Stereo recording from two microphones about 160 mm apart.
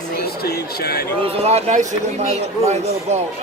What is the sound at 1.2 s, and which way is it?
Speech, 40° right (ahead or behind).